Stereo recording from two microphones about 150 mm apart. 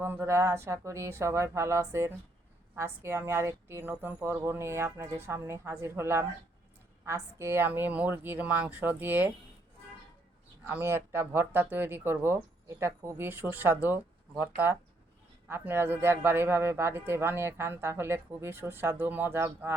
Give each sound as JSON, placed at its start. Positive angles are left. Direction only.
{"t": 0.0, "sound": "a man's voice", "side_deg": -15}
{"t": 10.7, "sound": "a man's voice", "side_deg": -15}